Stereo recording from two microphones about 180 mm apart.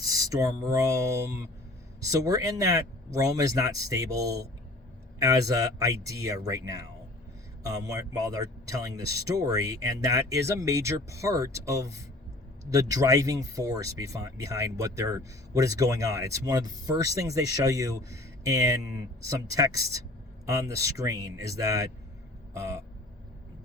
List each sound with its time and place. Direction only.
0.0 s speech: 20° right (ahead or behind)